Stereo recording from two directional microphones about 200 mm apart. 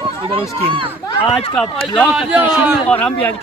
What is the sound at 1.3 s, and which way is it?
Speech, 30° left (ahead or behind).